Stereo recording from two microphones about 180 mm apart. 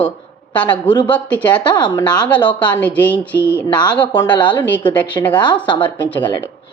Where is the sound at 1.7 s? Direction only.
25° left (ahead or behind).